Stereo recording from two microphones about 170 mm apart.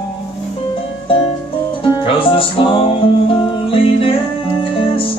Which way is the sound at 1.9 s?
30° left (ahead or behind).